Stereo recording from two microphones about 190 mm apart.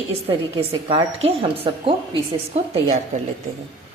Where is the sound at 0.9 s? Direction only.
25° right (ahead or behind).